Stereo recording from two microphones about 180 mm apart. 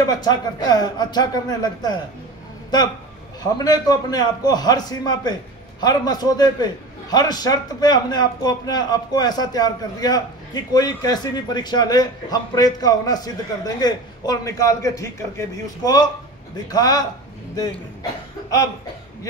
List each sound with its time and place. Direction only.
0.0 s a man's voice: 20° left (ahead or behind)